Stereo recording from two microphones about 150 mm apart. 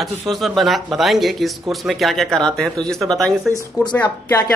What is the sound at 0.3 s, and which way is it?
Speech, centre (ahead or behind).